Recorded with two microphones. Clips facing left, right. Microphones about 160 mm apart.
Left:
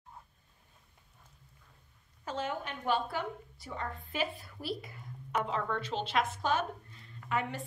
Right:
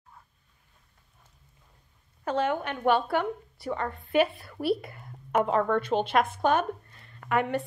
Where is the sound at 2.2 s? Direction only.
65° right (ahead or behind).